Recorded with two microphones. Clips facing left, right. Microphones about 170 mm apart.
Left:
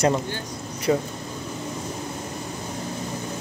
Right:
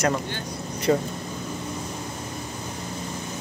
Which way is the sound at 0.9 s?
5° left (ahead or behind).